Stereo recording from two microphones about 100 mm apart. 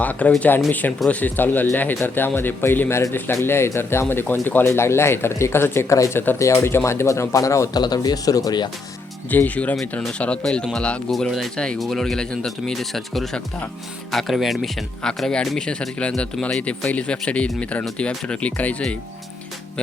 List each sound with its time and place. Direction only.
0.0 s speech: 15° left (ahead or behind); by 8.7 s 45° left (ahead or behind)
9.3 s speech: 15° left (ahead or behind)